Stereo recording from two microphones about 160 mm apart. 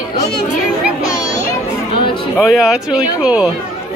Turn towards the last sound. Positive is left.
turn(degrees=-5)  # may be behind; listen again after turning